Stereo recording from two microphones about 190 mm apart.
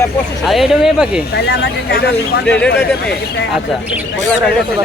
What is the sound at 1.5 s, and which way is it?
Speech, 60° left (ahead or behind).